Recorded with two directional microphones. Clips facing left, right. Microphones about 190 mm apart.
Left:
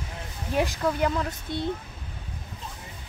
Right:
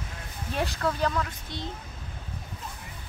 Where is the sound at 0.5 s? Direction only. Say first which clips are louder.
Left 4 dB; 15° left (ahead or behind).